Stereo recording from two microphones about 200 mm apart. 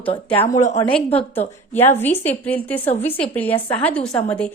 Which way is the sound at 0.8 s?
10° left (ahead or behind).